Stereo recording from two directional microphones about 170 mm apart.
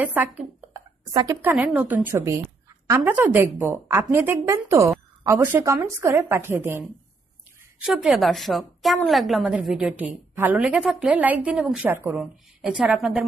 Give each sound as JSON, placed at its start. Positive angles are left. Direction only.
{"t": 0.0, "sound": "a woman's voice", "side_deg": -10}